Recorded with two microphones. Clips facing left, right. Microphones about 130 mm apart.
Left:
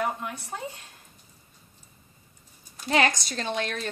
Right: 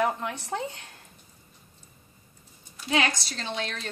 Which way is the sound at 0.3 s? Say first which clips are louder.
Right 4 dB; 80° right.